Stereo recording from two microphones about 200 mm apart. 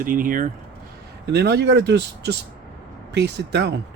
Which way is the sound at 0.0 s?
45° right (ahead or behind).